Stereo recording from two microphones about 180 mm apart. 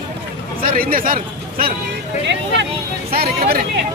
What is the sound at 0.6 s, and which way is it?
A man's voice, 55° right (ahead or behind).